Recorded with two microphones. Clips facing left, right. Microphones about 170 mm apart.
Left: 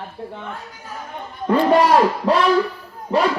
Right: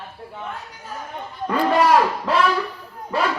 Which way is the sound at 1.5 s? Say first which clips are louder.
Left 3 dB; 30° left (ahead or behind).